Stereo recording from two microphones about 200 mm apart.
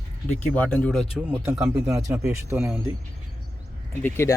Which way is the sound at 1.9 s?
15° right (ahead or behind).